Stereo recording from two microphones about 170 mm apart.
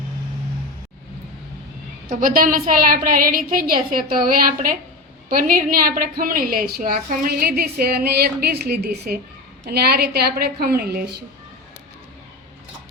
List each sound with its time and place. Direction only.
2.0 s a woman's voice: 55° right (ahead or behind)